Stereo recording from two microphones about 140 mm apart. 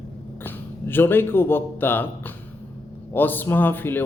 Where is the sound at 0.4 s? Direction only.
15° left (ahead or behind).